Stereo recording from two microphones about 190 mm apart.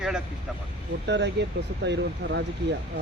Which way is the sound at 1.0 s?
65° right (ahead or behind).